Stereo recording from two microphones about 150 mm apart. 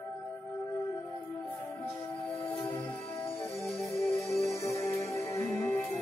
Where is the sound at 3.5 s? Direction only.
Centre (ahead or behind).